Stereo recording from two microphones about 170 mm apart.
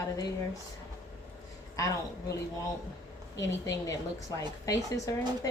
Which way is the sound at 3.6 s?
20° left (ahead or behind).